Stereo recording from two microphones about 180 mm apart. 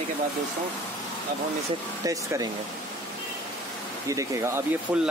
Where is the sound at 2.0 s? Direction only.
20° right (ahead or behind).